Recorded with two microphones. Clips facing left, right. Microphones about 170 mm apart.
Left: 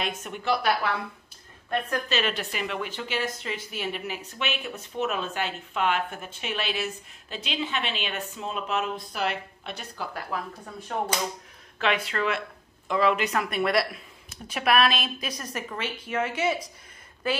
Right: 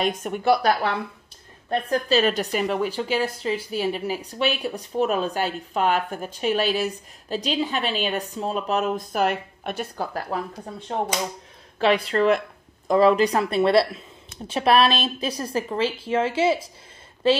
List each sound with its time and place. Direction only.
0.0 s a woman's voice: 40° right (ahead or behind)